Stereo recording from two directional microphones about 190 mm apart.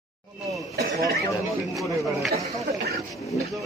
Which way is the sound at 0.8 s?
55° right (ahead or behind).